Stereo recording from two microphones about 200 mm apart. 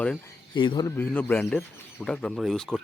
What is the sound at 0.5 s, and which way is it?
Speech, 25° left (ahead or behind).